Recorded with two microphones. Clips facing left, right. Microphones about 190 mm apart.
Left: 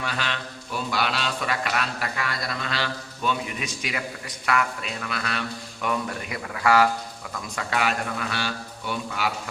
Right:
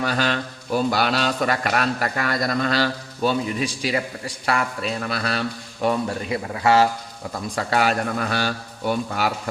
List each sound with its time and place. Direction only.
0.0 s speech: 40° right (ahead or behind)